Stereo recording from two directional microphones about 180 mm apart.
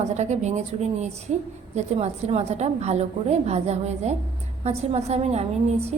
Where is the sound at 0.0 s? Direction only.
40° right (ahead or behind).